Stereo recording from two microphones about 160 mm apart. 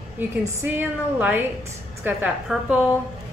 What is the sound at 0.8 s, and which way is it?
A woman's voice, 10° right (ahead or behind).